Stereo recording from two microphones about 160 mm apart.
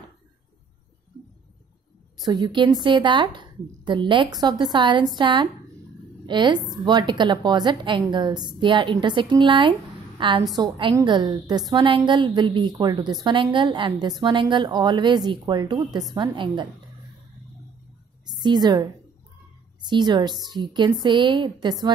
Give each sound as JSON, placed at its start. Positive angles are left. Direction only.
{"t": 2.2, "sound": "a woman's voice", "side_deg": -30}
{"t": 18.4, "sound": "a woman's voice", "side_deg": -25}